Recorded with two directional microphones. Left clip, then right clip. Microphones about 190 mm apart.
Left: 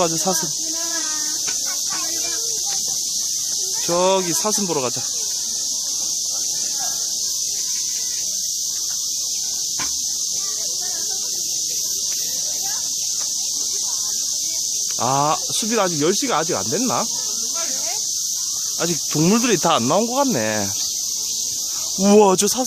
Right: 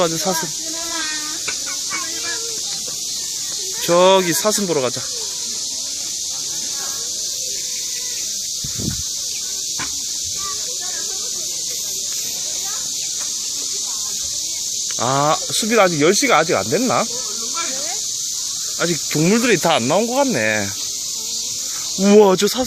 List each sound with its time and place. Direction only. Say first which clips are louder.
3.8 s speech: right 6 dB; centre (ahead or behind)
15.0 s speech: right 2 dB; 5° left (ahead or behind)
19.2 s speech: right 2 dB; 20° left (ahead or behind)
22.0 s speech: right 2 dB; 15° left (ahead or behind)